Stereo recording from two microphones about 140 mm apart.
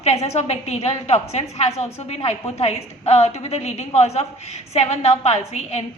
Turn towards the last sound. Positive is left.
turn(degrees=50)  # may be behind; listen again after turning